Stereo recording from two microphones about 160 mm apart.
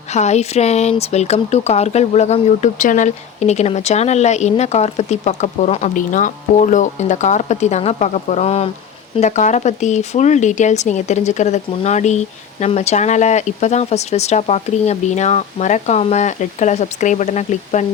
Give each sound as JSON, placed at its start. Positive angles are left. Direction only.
{"t": 0.1, "sound": "speech", "side_deg": 45}